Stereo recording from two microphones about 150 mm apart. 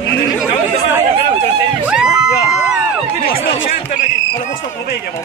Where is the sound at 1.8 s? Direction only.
5° right (ahead or behind).